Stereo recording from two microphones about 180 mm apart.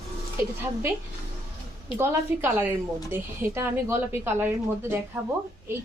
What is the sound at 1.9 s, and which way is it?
Speech, 15° right (ahead or behind).